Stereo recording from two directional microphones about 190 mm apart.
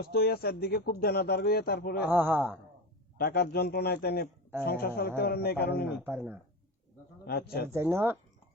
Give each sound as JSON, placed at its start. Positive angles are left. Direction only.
{"t": 0.0, "sound": "speech", "side_deg": 55}
{"t": 2.0, "sound": "speech", "side_deg": -10}
{"t": 3.2, "sound": "a man's voice", "side_deg": 55}
{"t": 6.0, "sound": "speech", "side_deg": -10}
{"t": 7.3, "sound": "speech", "side_deg": 55}
{"t": 7.7, "sound": "speech", "side_deg": -15}